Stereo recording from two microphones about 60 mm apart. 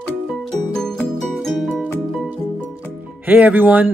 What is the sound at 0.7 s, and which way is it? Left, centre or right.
Music, centre.